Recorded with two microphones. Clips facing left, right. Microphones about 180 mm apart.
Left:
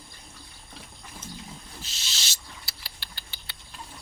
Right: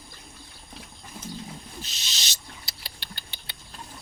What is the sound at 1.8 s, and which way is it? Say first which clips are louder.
Rodents: right 1 dB; 20° right (ahead or behind).